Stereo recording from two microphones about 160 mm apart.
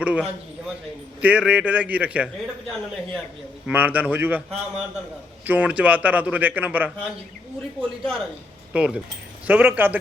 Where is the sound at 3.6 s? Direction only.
10° right (ahead or behind).